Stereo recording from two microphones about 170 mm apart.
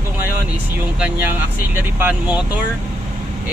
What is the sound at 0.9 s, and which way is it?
Speech, 10° right (ahead or behind).